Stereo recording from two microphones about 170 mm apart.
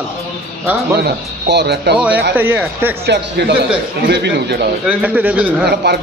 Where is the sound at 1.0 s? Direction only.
80° right.